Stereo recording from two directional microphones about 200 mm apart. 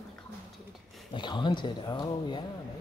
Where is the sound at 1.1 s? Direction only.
25° left (ahead or behind).